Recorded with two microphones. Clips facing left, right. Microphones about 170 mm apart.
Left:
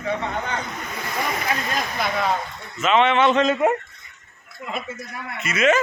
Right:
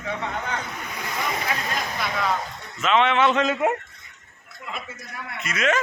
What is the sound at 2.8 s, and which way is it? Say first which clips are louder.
Speech: left 2 dB; centre (ahead or behind).